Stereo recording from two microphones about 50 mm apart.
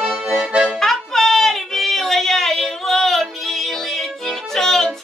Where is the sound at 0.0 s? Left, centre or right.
Centre.